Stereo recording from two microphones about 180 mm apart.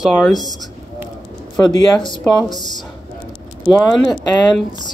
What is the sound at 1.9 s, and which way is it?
Speech, 25° left (ahead or behind).